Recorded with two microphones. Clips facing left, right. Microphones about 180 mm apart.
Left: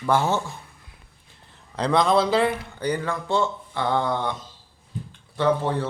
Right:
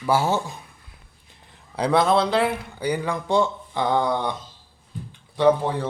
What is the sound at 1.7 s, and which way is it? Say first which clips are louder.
A man's voice: right 1 dB; 5° right (ahead or behind).